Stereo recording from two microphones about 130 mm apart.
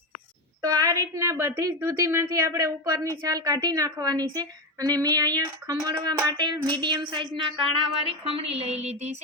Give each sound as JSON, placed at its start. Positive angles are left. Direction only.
{"t": 0.6, "sound": "a woman's voice", "side_deg": -25}